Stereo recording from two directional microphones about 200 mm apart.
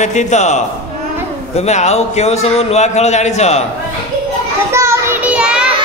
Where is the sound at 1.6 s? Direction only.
35° left (ahead or behind).